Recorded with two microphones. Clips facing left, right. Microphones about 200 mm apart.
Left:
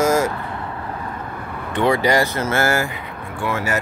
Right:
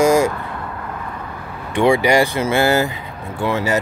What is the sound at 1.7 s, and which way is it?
Speech, 10° right (ahead or behind).